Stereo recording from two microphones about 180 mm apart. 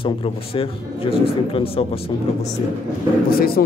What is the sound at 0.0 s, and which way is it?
Speech, 30° left (ahead or behind).